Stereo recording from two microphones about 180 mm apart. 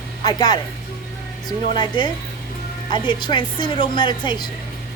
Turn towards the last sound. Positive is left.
turn(degrees=25)  # may be behind; listen again after turning